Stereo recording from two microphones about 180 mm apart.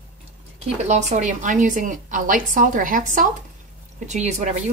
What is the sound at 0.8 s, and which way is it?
A woman's voice, 40° right (ahead or behind).